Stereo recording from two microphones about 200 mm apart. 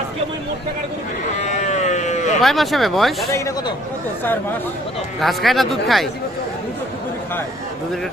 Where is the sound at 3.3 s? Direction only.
15° left (ahead or behind).